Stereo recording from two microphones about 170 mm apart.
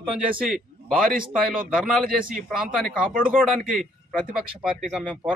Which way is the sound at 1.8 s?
Centre (ahead or behind).